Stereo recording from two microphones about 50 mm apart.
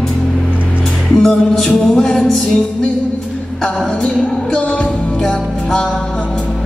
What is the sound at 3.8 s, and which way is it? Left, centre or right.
Music, centre.